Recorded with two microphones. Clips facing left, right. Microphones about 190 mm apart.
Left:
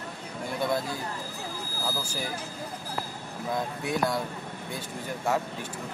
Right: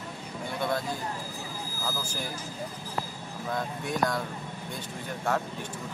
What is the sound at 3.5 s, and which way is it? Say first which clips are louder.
Speech: left 2 dB; 10° left (ahead or behind).